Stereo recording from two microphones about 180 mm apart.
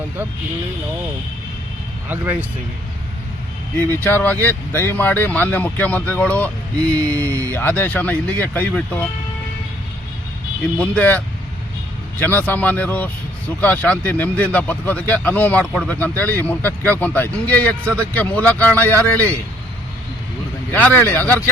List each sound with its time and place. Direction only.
2.0 s speech: 10° right (ahead or behind)
3.8 s speech: 10° left (ahead or behind)
7.3 s speech: 15° right (ahead or behind)
7.5 s speech: 10° left (ahead or behind)
10.8 s speech: 10° left (ahead or behind)
12.2 s speech: 10° left (ahead or behind)
20.7 s speech: 10° left (ahead or behind)